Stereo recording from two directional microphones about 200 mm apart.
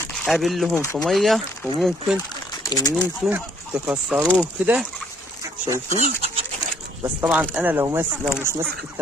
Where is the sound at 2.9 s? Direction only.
5° right (ahead or behind).